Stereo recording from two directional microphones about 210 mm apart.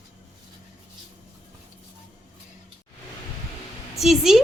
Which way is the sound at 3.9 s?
Centre (ahead or behind).